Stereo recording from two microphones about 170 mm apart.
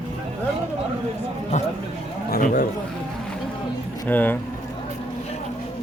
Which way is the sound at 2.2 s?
60° left (ahead or behind).